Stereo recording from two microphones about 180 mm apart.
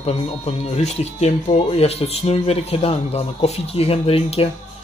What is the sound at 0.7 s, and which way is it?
Speech, 35° left (ahead or behind).